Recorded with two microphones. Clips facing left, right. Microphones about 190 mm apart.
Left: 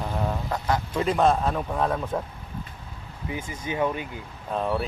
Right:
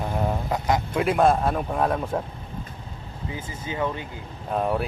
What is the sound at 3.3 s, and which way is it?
Speech, 20° left (ahead or behind).